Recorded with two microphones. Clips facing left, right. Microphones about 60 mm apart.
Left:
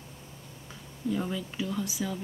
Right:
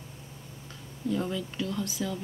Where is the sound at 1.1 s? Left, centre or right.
Centre.